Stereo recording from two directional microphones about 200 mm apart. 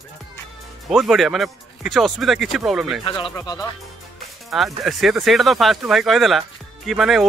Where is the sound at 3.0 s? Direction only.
20° left (ahead or behind).